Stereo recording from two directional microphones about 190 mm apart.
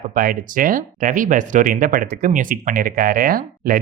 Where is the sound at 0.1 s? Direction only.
50° right (ahead or behind).